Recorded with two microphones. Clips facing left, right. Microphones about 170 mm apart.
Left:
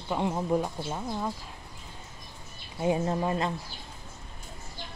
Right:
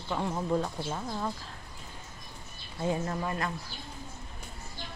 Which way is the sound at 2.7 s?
20° left (ahead or behind).